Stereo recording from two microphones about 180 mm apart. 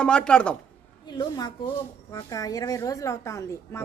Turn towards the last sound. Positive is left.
turn(degrees=15)  # may be behind; listen again after turning